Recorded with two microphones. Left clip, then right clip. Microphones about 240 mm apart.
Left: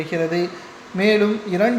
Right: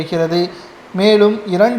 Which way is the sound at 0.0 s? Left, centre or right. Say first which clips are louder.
Right 5 dB; right.